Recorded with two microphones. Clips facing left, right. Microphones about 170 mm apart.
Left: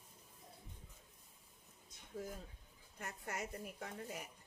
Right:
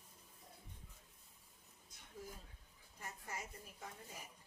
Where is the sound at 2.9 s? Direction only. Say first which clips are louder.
Left 4 dB; 70° left (ahead or behind).